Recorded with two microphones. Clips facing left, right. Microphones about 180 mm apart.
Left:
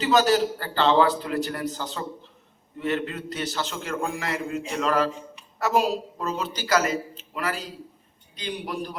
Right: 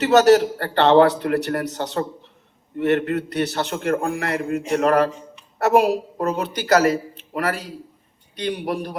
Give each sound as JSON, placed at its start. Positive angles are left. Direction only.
{"t": 0.0, "sound": "a man's voice", "side_deg": -70}